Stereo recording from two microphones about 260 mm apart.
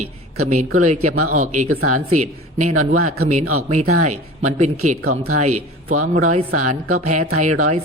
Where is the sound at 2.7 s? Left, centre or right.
Right.